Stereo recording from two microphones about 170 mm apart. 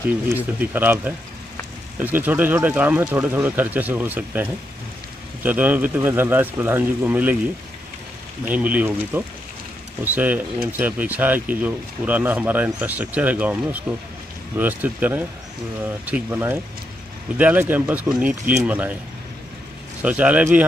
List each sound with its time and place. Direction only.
0.3 s speech: 10° right (ahead or behind)
8.5 s speech: 10° right (ahead or behind)
20.0 s speech: 10° right (ahead or behind)